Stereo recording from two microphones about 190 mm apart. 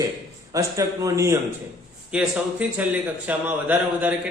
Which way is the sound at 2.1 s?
5° right (ahead or behind).